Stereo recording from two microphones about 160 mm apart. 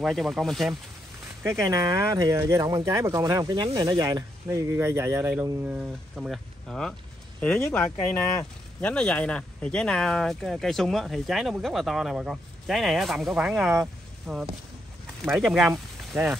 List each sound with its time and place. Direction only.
0.0 s speech: centre (ahead or behind)
1.4 s speech: 20° right (ahead or behind)